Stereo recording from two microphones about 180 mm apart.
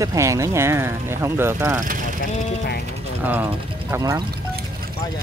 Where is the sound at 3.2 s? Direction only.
10° right (ahead or behind).